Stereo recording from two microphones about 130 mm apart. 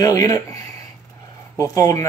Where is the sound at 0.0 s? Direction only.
30° left (ahead or behind).